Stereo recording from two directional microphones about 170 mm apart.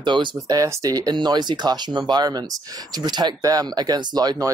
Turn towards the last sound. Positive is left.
turn(degrees=-25)  # may be behind; listen again after turning